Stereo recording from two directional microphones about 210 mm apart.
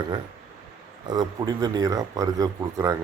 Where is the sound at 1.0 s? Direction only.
20° right (ahead or behind).